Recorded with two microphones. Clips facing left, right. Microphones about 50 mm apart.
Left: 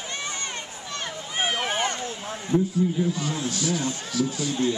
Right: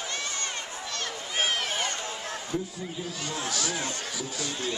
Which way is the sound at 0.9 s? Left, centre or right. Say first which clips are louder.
Left 3 dB; centre.